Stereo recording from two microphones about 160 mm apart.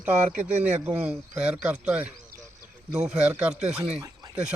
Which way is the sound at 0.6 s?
10° right (ahead or behind).